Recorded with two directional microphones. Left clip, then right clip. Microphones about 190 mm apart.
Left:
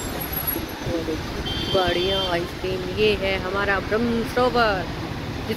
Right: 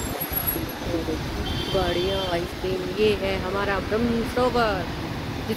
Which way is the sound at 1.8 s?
5° right (ahead or behind).